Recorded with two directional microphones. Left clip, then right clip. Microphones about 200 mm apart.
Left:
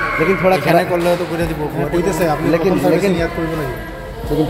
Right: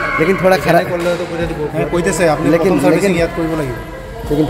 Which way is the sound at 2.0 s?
50° right (ahead or behind).